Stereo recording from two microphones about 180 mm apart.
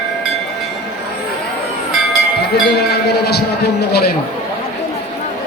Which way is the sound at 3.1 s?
65° left (ahead or behind).